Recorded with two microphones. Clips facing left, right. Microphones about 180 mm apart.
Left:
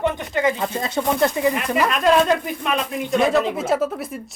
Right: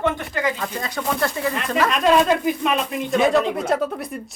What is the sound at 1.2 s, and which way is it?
Speech, 20° left (ahead or behind).